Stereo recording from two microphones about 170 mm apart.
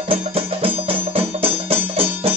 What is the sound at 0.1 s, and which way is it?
Music, 35° right (ahead or behind).